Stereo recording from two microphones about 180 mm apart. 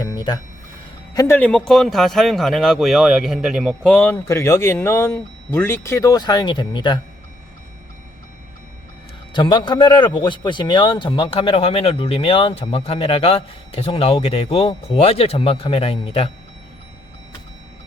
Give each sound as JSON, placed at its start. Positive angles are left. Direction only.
{"t": 0.0, "sound": "a sound", "side_deg": 20}
{"t": 1.1, "sound": "speech", "side_deg": 20}
{"t": 1.4, "sound": "speech", "side_deg": 5}
{"t": 3.8, "sound": "speech", "side_deg": 10}
{"t": 9.3, "sound": "a man's voice", "side_deg": 25}